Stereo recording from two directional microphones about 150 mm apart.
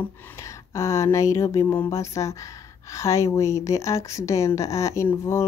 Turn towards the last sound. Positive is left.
turn(degrees=15)  # may be behind; listen again after turning